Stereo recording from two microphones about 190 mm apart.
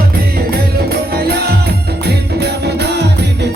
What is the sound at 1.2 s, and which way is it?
Music, 55° right (ahead or behind).